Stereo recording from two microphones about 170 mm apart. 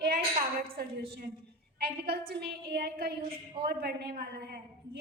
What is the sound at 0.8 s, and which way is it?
A woman's voice, 70° right (ahead or behind).